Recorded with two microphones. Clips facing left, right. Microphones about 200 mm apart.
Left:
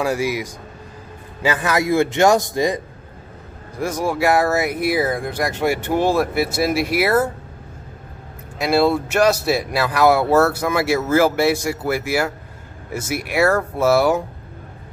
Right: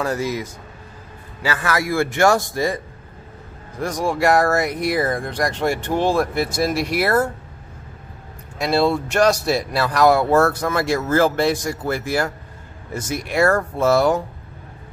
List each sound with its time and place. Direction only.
0.0 s a man's voice: 10° left (ahead or behind)
3.7 s speech: 5° left (ahead or behind)
8.5 s speech: 5° left (ahead or behind)